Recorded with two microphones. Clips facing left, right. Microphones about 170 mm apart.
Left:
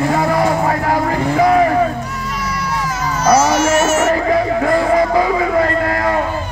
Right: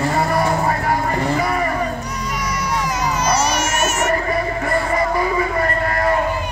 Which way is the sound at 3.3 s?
90° left.